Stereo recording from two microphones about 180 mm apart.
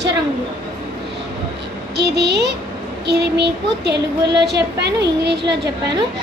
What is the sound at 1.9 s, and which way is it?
Speech, 70° right (ahead or behind).